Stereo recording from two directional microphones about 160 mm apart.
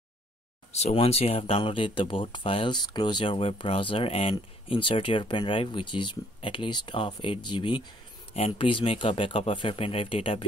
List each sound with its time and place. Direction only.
0.7 s speech: 40° left (ahead or behind)